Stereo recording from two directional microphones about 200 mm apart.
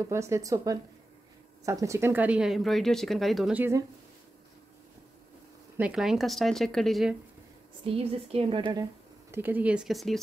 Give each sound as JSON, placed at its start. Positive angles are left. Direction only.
{"t": 0.0, "sound": "speech", "side_deg": -15}
{"t": 5.8, "sound": "speech", "side_deg": -5}
{"t": 7.8, "sound": "speech", "side_deg": -30}
{"t": 9.3, "sound": "speech", "side_deg": -10}